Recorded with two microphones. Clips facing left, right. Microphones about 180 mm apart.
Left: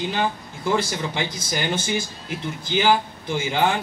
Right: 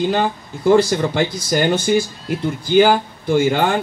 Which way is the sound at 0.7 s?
45° right (ahead or behind).